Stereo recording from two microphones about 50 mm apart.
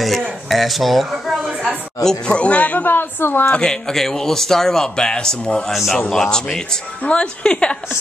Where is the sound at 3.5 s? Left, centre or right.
Centre.